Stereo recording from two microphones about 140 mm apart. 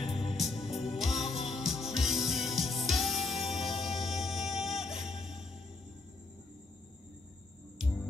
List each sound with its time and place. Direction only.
0.2 s music: centre (ahead or behind)